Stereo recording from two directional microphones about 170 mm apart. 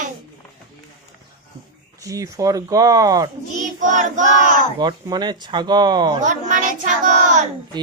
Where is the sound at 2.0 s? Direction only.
20° right (ahead or behind).